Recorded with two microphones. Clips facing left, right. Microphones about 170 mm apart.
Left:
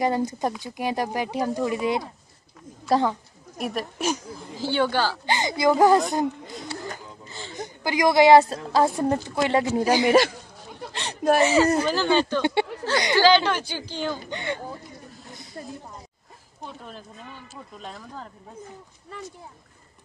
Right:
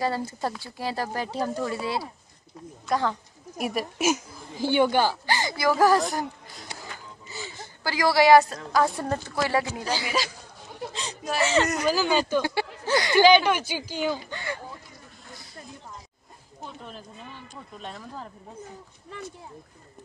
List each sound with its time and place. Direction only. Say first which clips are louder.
0.0 s speech: left 4 dB; 20° left (ahead or behind)
3.5 s speech: right 1 dB; 5° right (ahead or behind)
5.2 s a woman's voice: left 3 dB; 20° left (ahead or behind)
7.2 s a sound: right 2 dB; 5° right (ahead or behind)
7.5 s a woman's voice: left 5 dB; 20° left (ahead or behind)
10.0 s speech: left 14 dB; 55° left (ahead or behind)
10.9 s a sound: left 12 dB; 65° left (ahead or behind)
11.6 s a woman's voice: left 5 dB; 30° left (ahead or behind)
11.9 s speech: left 2 dB; 5° right (ahead or behind)
12.4 s a woman's voice: left 3 dB; 25° left (ahead or behind)
13.1 s speech: right 1 dB; 15° right (ahead or behind)
14.3 s a woman's voice: left 4 dB; 20° left (ahead or behind)
17.7 s speech: right 1 dB; centre (ahead or behind)